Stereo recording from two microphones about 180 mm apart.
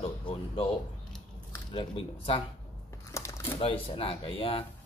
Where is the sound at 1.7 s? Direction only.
30° left (ahead or behind).